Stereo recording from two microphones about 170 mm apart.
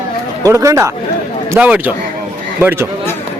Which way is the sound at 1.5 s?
10° right (ahead or behind).